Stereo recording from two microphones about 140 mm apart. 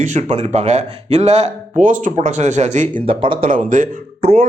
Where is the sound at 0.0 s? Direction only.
55° right (ahead or behind).